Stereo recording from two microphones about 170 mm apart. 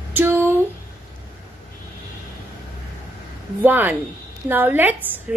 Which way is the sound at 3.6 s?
10° right (ahead or behind).